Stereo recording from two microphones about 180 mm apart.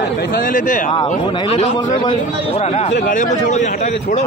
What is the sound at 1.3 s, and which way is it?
Speech, 30° left (ahead or behind).